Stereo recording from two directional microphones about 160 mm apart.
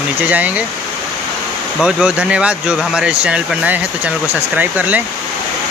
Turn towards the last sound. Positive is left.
turn(degrees=-10)  # may be behind; listen again after turning